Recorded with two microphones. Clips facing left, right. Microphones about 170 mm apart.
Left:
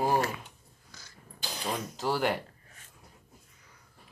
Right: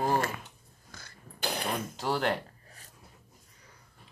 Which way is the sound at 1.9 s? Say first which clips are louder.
Left 1 dB; centre (ahead or behind).